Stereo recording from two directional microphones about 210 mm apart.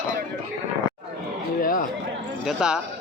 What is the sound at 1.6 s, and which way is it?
Speech, 40° left (ahead or behind).